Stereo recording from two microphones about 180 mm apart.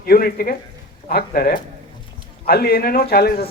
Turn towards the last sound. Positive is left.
turn(degrees=60)  # may be behind; listen again after turning